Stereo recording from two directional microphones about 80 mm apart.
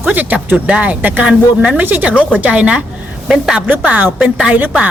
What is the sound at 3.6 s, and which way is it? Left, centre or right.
Speech, right.